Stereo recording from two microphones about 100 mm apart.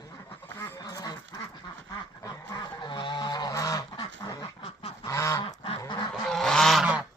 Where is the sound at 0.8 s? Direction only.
40° left (ahead or behind).